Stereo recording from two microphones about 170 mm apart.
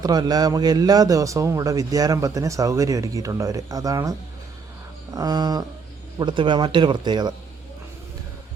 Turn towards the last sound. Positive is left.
turn(degrees=-25)  # may be behind; listen again after turning